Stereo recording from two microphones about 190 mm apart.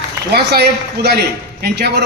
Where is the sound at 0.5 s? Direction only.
60° right (ahead or behind).